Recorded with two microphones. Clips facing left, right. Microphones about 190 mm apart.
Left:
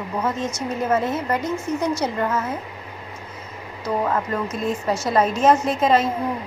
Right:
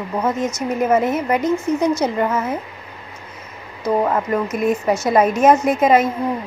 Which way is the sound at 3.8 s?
15° right (ahead or behind).